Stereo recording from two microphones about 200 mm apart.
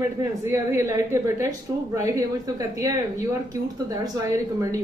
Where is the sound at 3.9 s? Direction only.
15° right (ahead or behind).